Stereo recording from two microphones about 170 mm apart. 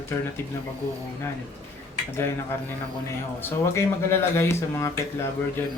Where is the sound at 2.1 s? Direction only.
15° left (ahead or behind).